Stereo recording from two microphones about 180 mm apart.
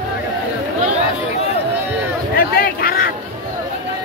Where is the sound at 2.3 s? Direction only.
55° left (ahead or behind).